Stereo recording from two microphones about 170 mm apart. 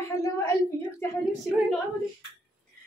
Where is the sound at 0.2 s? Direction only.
15° left (ahead or behind).